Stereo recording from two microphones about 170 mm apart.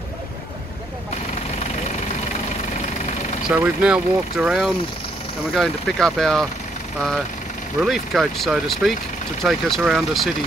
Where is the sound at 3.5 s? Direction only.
10° right (ahead or behind).